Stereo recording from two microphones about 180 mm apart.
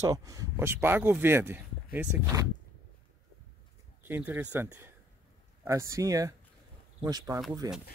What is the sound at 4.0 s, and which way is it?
Speech, 10° right (ahead or behind).